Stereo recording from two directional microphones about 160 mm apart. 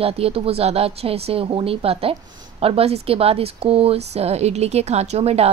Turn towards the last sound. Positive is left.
turn(degrees=-40)  # may be behind; listen again after turning